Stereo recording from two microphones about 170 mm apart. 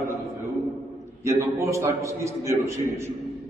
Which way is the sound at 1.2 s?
15° right (ahead or behind).